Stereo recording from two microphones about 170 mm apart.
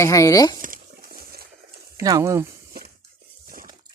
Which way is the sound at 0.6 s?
55° right (ahead or behind).